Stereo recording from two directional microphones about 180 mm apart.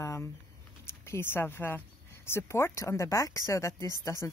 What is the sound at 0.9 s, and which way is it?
Speech, 15° left (ahead or behind).